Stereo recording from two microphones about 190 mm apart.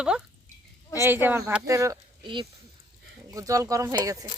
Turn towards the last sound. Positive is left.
turn(degrees=-20)  # may be behind; listen again after turning